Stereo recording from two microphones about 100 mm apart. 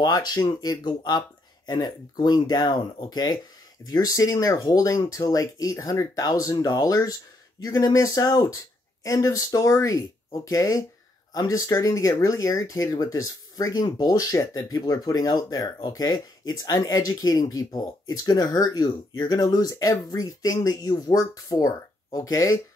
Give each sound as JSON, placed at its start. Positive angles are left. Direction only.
{"t": 0.0, "sound": "speech", "side_deg": 40}